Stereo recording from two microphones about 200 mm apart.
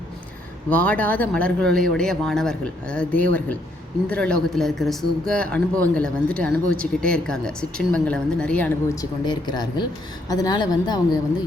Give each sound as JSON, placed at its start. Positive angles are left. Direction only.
{"t": 0.7, "sound": "speech", "side_deg": 10}
{"t": 9.0, "sound": "speech", "side_deg": 20}